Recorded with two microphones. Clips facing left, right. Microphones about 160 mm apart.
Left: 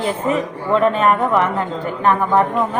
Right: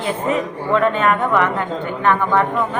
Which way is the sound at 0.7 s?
30° left (ahead or behind).